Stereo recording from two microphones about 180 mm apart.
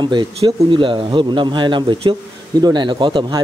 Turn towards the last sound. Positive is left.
turn(degrees=-25)  # may be behind; listen again after turning